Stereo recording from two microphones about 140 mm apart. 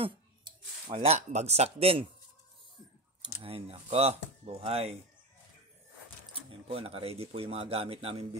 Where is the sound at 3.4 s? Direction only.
45° right (ahead or behind).